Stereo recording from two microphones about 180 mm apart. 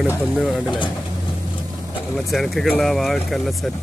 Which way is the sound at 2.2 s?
Centre (ahead or behind).